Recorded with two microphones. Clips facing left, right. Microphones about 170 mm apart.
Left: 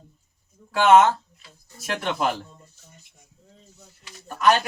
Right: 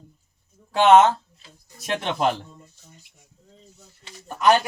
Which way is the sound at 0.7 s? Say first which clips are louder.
Right 1 dB; 20° right (ahead or behind).